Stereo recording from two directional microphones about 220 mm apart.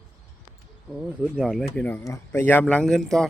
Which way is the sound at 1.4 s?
Centre (ahead or behind).